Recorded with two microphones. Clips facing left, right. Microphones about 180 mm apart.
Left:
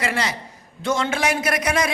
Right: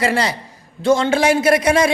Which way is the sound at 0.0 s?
35° right (ahead or behind).